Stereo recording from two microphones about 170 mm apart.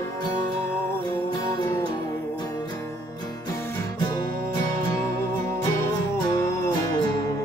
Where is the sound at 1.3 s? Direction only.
25° left (ahead or behind).